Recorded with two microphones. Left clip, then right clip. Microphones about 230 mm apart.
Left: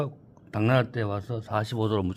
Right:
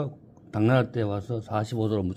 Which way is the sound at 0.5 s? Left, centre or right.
Centre.